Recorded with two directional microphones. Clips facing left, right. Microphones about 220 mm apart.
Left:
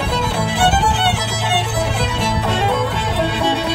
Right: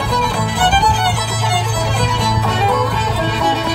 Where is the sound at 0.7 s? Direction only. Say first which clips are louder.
Right 2 dB; 30° left (ahead or behind).